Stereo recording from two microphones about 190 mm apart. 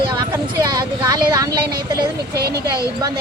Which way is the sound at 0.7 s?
20° right (ahead or behind).